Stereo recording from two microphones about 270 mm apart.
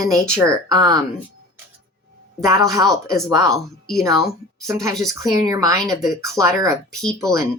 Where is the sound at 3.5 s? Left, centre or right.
Centre.